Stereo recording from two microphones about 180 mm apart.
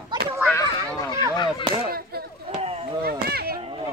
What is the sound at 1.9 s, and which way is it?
Chop, 60° right (ahead or behind).